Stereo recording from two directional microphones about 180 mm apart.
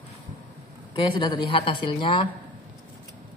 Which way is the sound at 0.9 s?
25° left (ahead or behind).